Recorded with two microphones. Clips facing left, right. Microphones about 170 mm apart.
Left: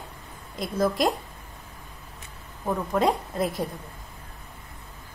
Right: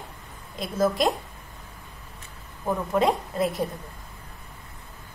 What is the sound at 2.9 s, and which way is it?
Speech, centre (ahead or behind).